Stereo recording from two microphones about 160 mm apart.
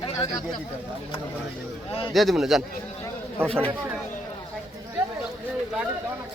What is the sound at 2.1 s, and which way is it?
Speech, centre (ahead or behind).